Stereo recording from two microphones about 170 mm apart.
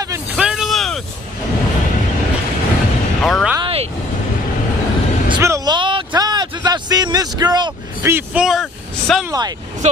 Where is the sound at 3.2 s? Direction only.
Centre (ahead or behind).